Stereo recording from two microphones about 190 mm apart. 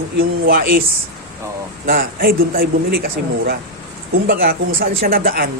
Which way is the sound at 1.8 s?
50° right (ahead or behind).